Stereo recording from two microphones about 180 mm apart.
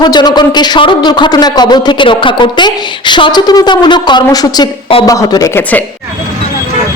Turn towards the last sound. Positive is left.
turn(degrees=20)  # may be behind; listen again after turning